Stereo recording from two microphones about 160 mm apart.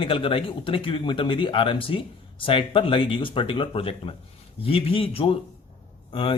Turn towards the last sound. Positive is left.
turn(degrees=35)  # may be behind; listen again after turning